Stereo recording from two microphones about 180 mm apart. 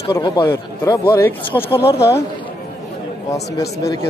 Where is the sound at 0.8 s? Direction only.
15° left (ahead or behind).